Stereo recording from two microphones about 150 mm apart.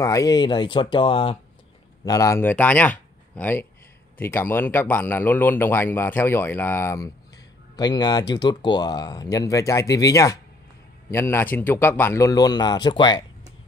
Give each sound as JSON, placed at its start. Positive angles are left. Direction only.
{"t": 0.0, "sound": "speech", "side_deg": 20}
{"t": 2.0, "sound": "speech", "side_deg": 20}